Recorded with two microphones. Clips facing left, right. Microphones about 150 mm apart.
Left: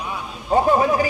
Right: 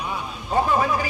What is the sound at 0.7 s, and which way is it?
Speech, 40° left (ahead or behind).